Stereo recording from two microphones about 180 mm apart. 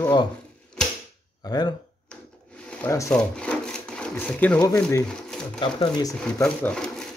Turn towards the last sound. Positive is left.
turn(degrees=5)  # may be behind; listen again after turning